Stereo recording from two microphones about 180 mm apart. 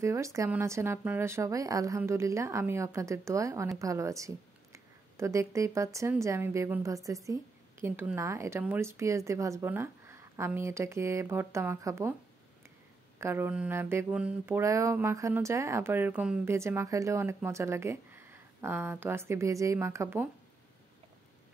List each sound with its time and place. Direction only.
0.0 s mantra: 15° right (ahead or behind)
4.7 s a sound: 15° right (ahead or behind)
5.9 s mantra: 15° right (ahead or behind)
13.2 s mantra: 15° right (ahead or behind)